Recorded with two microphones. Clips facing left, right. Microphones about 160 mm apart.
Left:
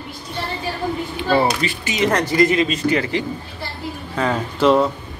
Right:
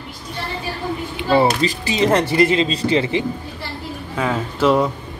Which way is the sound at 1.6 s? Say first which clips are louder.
Right 2 dB; 30° right (ahead or behind).